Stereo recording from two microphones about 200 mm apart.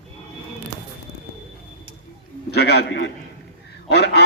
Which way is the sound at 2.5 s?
55° left (ahead or behind).